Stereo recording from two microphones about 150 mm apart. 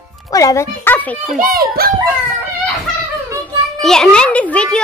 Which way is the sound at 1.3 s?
75° right (ahead or behind).